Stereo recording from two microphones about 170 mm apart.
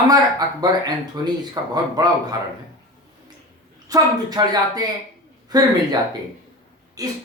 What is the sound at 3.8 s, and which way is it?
Speech, 20° right (ahead or behind).